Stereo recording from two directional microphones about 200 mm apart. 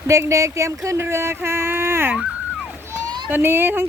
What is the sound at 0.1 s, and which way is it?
Speech, 15° right (ahead or behind).